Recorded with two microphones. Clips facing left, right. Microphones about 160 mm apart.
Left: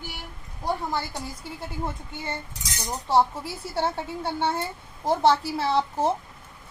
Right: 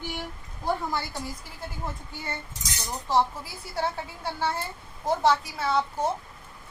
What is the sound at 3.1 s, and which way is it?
A woman's voice, 30° left (ahead or behind).